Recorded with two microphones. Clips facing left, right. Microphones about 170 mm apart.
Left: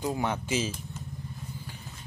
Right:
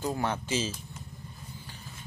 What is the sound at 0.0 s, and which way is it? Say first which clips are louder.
Speech: left 1 dB; 10° left (ahead or behind).